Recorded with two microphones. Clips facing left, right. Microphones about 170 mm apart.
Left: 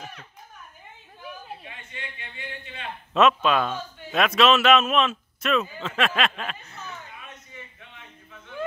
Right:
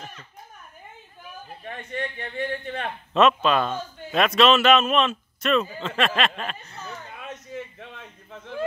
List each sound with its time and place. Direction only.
1.7 s a man's voice: 50° right (ahead or behind)
3.1 s a man's voice: centre (ahead or behind)
7.5 s a sound: 75° right (ahead or behind)